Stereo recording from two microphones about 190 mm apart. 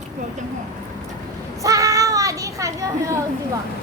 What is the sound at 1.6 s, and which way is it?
A child's voice, 20° right (ahead or behind).